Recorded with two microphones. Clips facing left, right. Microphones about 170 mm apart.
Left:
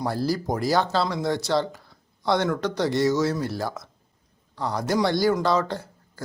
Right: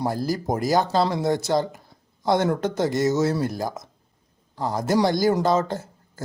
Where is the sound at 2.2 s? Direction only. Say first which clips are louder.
Right 2 dB; 45° right (ahead or behind).